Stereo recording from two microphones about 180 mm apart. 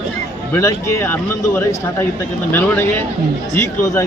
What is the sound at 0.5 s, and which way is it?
Speech, 15° left (ahead or behind).